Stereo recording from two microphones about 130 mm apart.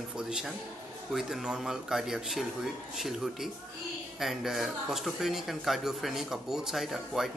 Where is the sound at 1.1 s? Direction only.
5° right (ahead or behind).